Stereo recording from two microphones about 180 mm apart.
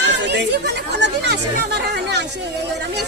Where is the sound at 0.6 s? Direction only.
70° right (ahead or behind).